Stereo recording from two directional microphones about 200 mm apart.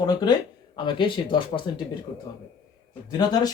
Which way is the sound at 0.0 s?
20° left (ahead or behind).